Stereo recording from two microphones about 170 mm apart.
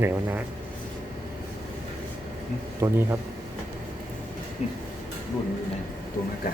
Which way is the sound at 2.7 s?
15° right (ahead or behind).